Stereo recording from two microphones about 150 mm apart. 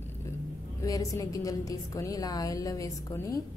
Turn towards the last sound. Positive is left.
turn(degrees=20)  # may be behind; listen again after turning